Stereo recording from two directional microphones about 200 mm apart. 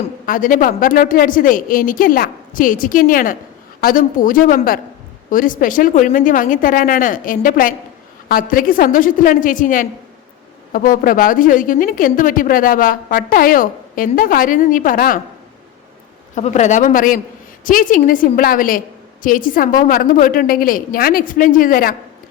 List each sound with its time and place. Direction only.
0.3 s a woman's voice: 40° left (ahead or behind)
16.3 s a woman's voice: 35° left (ahead or behind)